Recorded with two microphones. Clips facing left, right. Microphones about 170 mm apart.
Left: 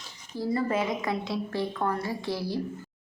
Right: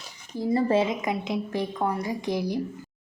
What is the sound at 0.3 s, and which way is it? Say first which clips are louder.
Speech: right 5 dB; 20° right (ahead or behind).